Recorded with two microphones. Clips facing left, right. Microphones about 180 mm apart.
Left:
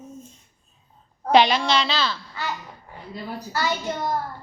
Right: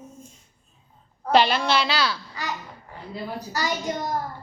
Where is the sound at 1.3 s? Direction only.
5° right (ahead or behind).